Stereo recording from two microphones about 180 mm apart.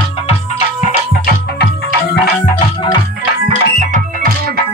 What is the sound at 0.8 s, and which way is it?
Music, 55° left (ahead or behind).